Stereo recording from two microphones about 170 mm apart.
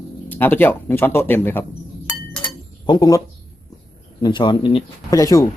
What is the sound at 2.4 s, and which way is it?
Chink, 25° left (ahead or behind).